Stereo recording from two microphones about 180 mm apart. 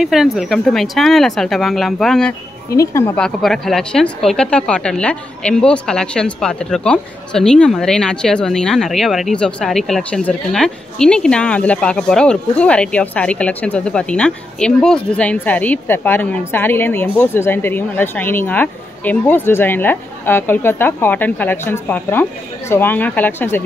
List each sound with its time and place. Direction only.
0.0 s speech: centre (ahead or behind)
2.7 s speech: 15° left (ahead or behind)
3.2 s speech: 5° left (ahead or behind)